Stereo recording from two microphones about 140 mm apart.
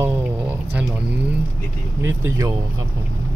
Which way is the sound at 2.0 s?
20° right (ahead or behind).